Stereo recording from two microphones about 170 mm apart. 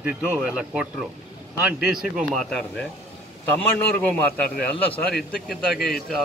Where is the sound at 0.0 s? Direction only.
10° right (ahead or behind).